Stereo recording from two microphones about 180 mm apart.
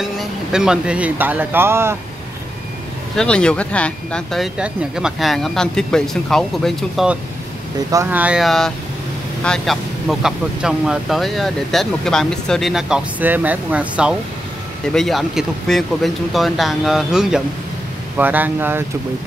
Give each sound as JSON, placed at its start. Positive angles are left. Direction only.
{"t": 0.0, "sound": "speech", "side_deg": -5}
{"t": 3.2, "sound": "speech", "side_deg": 5}
{"t": 7.9, "sound": "speech", "side_deg": -10}